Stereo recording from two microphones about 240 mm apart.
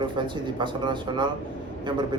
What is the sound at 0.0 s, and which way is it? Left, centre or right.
Speech, centre.